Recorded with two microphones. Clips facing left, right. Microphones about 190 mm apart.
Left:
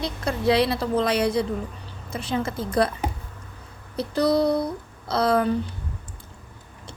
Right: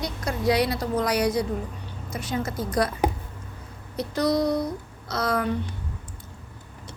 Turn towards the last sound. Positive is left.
turn(degrees=30)  # may be behind; listen again after turning